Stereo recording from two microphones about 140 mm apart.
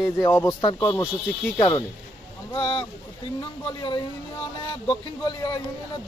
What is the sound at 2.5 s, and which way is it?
Speech, 40° left (ahead or behind).